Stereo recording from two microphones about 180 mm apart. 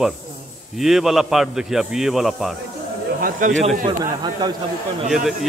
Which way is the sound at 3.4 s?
45° right (ahead or behind).